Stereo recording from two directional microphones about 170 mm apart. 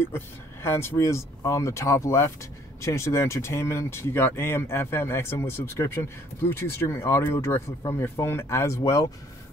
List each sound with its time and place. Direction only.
0.0 s speech: 15° left (ahead or behind)